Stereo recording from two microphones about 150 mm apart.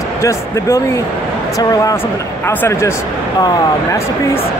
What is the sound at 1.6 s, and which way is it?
Speech, 25° left (ahead or behind).